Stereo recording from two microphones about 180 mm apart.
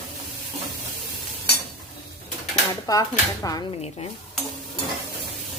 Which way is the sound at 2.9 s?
20° left (ahead or behind).